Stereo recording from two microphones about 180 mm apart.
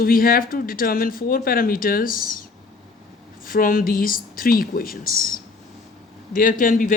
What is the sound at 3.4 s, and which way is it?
Speech, 50° left (ahead or behind).